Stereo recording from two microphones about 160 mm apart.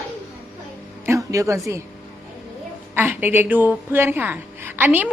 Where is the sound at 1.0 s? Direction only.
20° right (ahead or behind).